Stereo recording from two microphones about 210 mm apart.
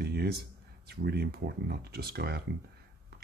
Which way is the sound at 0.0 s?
50° right (ahead or behind).